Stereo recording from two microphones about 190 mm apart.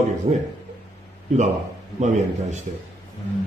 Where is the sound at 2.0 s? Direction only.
40° right (ahead or behind).